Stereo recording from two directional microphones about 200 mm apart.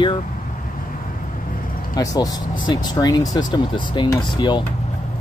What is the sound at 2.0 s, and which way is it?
Speech, 20° left (ahead or behind).